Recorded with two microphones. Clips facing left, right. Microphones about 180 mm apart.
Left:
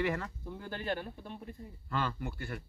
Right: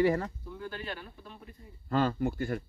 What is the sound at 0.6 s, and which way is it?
Speech, 45° left (ahead or behind).